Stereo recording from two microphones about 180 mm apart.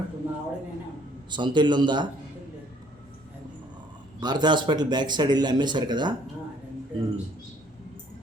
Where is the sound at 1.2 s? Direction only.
25° right (ahead or behind).